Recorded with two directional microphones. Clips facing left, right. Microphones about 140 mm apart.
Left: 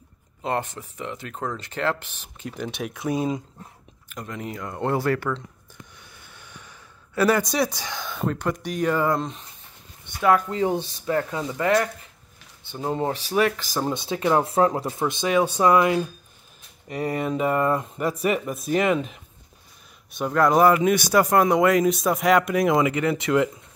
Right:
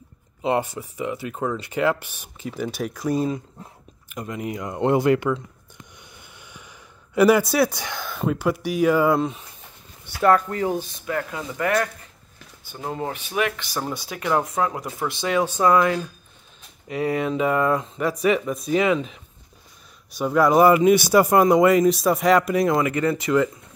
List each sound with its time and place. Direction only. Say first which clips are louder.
0.4 s speech: right 4 dB; 10° right (ahead or behind)
6.3 s snort: even; 10° right (ahead or behind)
7.2 s speech: right 4 dB; 10° right (ahead or behind)
10.5 s speech: left 1 dB; 20° left (ahead or behind)
13.7 s speech: left 3 dB; 20° left (ahead or behind)
16.9 s speech: right 2 dB; centre (ahead or behind)
22.7 s speech: even; 15° left (ahead or behind)